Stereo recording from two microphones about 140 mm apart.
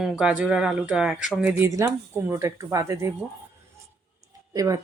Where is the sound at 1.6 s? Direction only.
20° right (ahead or behind).